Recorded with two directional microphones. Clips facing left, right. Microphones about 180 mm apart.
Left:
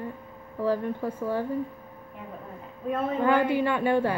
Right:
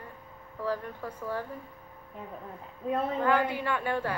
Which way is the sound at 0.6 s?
25° left (ahead or behind).